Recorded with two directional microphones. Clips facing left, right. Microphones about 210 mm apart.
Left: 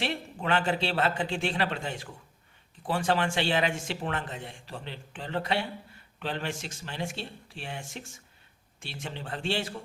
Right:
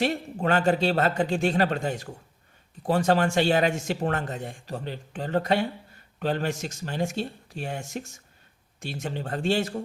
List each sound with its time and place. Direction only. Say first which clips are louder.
0.0 s a man's voice: right 7 dB; 45° right (ahead or behind)